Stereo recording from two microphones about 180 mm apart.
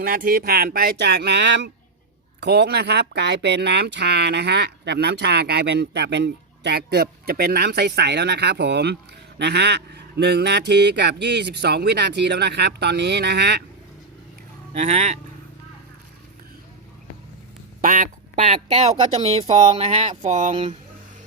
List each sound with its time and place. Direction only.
0.0 s speech: 50° right (ahead or behind); by 13.7 s 65° right (ahead or behind)
14.8 s speech: 40° right (ahead or behind)
17.7 s speech: 50° right (ahead or behind)